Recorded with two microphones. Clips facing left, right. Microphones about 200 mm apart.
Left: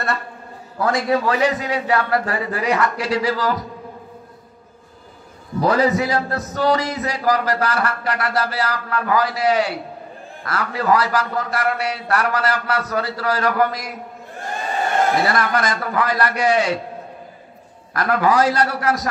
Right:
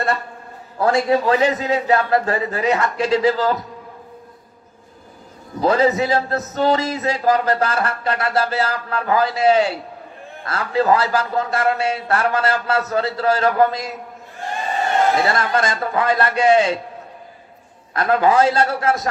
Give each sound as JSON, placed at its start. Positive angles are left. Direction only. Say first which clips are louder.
{"t": 0.7, "sound": "speech", "louder": "right 2 dB", "side_deg": -30}
{"t": 5.6, "sound": "speech", "louder": "right 1 dB", "side_deg": -25}
{"t": 15.2, "sound": "speech", "louder": "right 1 dB", "side_deg": -25}
{"t": 17.9, "sound": "speech", "louder": "right 2 dB", "side_deg": -25}